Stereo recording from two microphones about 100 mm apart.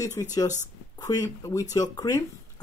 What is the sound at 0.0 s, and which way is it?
Speech, 35° left (ahead or behind).